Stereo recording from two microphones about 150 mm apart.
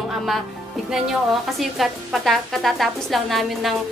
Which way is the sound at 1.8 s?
Centre (ahead or behind).